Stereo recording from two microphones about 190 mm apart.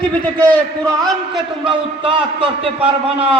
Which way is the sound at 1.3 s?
25° right (ahead or behind).